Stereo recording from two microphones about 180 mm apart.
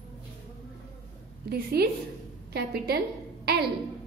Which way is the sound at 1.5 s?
60° right (ahead or behind).